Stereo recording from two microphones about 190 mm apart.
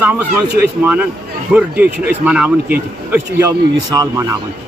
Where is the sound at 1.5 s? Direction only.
10° right (ahead or behind).